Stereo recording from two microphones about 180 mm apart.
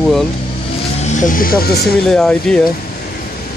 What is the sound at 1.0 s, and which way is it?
Speech, 45° left (ahead or behind).